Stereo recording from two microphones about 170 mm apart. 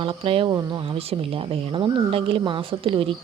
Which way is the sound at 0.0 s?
30° right (ahead or behind).